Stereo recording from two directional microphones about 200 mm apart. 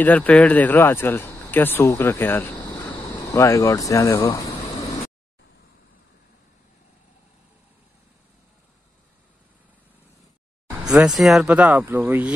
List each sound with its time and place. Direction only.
0.0 s speech: 10° left (ahead or behind)
10.9 s speech: centre (ahead or behind)